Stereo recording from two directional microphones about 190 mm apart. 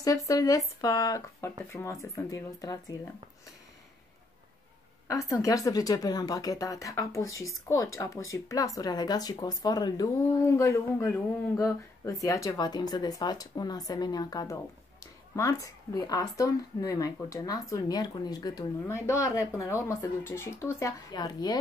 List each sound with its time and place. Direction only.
0.0 s speech: 20° left (ahead or behind)
5.0 s speech: 15° left (ahead or behind)